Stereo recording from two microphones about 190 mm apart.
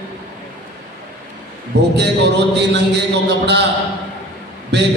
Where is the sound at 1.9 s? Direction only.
65° right (ahead or behind).